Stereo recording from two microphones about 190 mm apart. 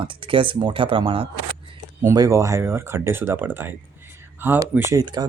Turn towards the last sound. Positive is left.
turn(degrees=-20)  # may be behind; listen again after turning